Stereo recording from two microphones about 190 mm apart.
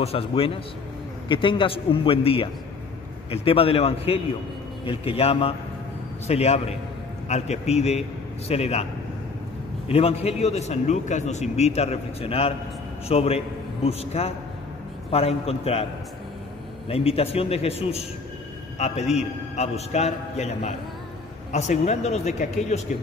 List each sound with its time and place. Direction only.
0.0 s a man's voice: 30° left (ahead or behind)
9.8 s a man's voice: 30° left (ahead or behind)
16.9 s a man's voice: 30° left (ahead or behind)
19.1 s a man's voice: 35° left (ahead or behind)